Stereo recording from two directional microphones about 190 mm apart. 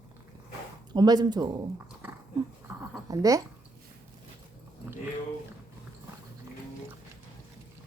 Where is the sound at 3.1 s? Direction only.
20° right (ahead or behind).